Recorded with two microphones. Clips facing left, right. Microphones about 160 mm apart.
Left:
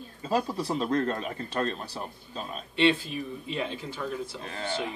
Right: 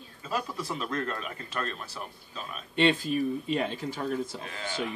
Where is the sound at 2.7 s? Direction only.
45° right (ahead or behind).